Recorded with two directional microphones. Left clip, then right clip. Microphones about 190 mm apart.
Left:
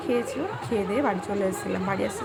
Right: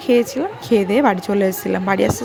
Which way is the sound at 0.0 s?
45° right (ahead or behind).